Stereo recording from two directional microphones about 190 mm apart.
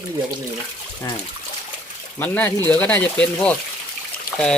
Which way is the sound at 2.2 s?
10° left (ahead or behind).